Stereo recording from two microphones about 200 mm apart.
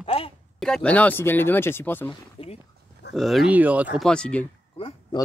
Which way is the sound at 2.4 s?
25° left (ahead or behind).